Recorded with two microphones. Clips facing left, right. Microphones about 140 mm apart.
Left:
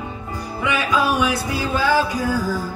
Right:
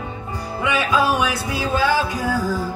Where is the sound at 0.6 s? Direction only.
20° right (ahead or behind).